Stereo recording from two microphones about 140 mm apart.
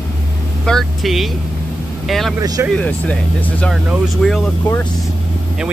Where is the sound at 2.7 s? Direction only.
10° left (ahead or behind).